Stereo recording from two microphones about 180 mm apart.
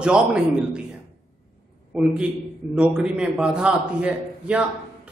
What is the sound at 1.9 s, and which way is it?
A man's voice, 5° right (ahead or behind).